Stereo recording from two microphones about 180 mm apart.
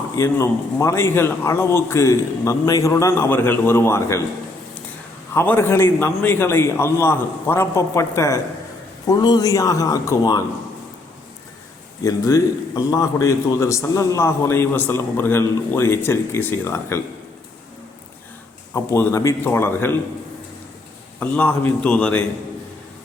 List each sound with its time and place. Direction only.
0.2 s a man's voice: 15° left (ahead or behind)
5.3 s a man's voice: 10° left (ahead or behind)
12.0 s a man's voice: 20° left (ahead or behind)
18.7 s a man's voice: 15° left (ahead or behind)
21.2 s a man's voice: 10° left (ahead or behind)